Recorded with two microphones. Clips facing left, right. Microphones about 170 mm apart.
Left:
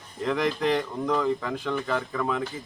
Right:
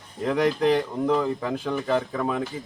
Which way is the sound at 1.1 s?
20° right (ahead or behind).